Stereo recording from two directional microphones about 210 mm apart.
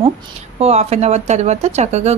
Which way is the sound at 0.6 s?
30° right (ahead or behind).